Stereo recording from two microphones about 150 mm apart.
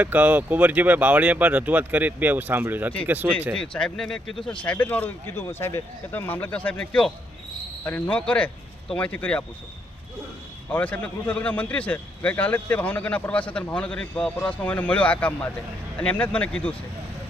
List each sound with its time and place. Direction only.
0.0 s speech: 10° right (ahead or behind)
3.5 s a man's voice: 5° left (ahead or behind)
10.7 s a man's voice: 10° left (ahead or behind)